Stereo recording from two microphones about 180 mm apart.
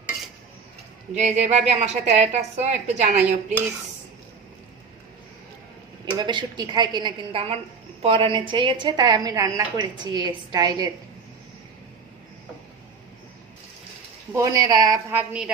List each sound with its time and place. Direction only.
1.1 s a woman's voice: 40° right (ahead or behind)
6.1 s a woman's voice: 25° right (ahead or behind)
14.3 s a woman's voice: 20° right (ahead or behind)
15.3 s a woman's voice: 5° right (ahead or behind)